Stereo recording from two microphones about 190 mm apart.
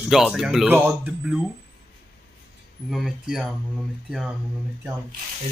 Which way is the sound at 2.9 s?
Centre (ahead or behind).